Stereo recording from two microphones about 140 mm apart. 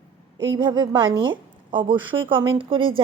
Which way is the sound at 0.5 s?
30° right (ahead or behind).